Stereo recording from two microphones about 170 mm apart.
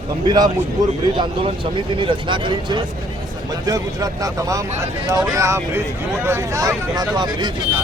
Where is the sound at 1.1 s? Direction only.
30° right (ahead or behind).